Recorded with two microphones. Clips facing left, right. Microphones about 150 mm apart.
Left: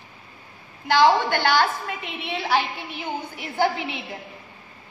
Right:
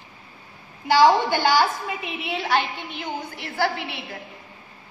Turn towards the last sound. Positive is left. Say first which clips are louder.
# left 2 dB
turn(degrees=15)  # may be behind; listen again after turning